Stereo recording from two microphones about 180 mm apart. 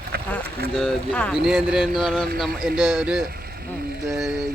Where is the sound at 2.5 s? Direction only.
60° right (ahead or behind).